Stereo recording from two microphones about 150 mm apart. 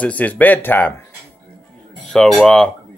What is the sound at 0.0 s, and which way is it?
Speech, 10° left (ahead or behind).